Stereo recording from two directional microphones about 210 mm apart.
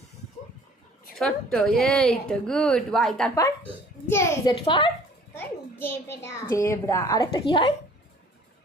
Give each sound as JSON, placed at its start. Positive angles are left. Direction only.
{"t": 1.2, "sound": "a woman's voice", "side_deg": 5}
{"t": 4.6, "sound": "a woman's voice", "side_deg": 25}
{"t": 5.3, "sound": "a sound", "side_deg": 10}
{"t": 6.2, "sound": "a woman's voice", "side_deg": 10}